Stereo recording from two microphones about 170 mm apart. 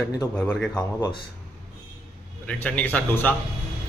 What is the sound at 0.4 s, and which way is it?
Speech, 5° left (ahead or behind).